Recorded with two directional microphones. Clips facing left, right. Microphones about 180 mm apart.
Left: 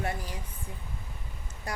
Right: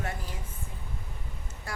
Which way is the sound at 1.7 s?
20° left (ahead or behind).